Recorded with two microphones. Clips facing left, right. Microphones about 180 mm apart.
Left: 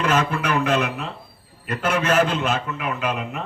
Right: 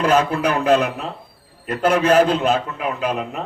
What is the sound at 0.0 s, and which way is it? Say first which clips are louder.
Speech: right 4 dB; 35° right (ahead or behind).